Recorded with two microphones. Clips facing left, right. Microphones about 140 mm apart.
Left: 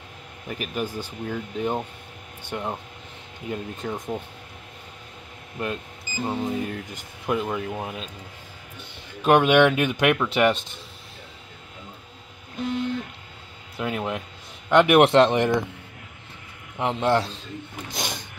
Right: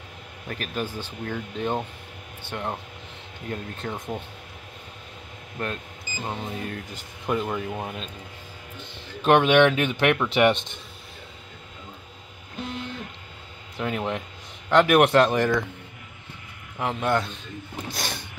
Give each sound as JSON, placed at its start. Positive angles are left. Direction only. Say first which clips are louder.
{"t": 0.5, "sound": "speech", "louder": "left 1 dB", "side_deg": 10}
{"t": 5.6, "sound": "speech", "louder": "left 2 dB", "side_deg": 15}
{"t": 10.1, "sound": "speech", "louder": "right 1 dB", "side_deg": 0}
{"t": 13.7, "sound": "speech", "louder": "even", "side_deg": 5}
{"t": 14.7, "sound": "a man's voice", "louder": "left 2 dB", "side_deg": 20}
{"t": 16.7, "sound": "a man's voice", "louder": "left 3 dB", "side_deg": 25}
{"t": 17.9, "sound": "vehicle", "louder": "left 3 dB", "side_deg": 15}